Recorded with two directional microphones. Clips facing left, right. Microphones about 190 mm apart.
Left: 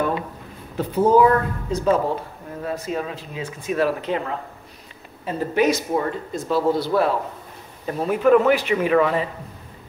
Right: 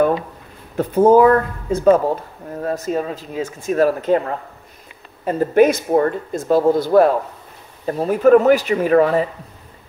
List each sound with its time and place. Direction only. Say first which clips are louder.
0.7 s speech: right 5 dB; 50° right (ahead or behind)
5.2 s speech: right 6 dB; 50° right (ahead or behind)